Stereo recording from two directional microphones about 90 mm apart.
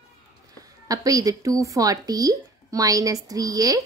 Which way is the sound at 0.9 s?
40° right (ahead or behind).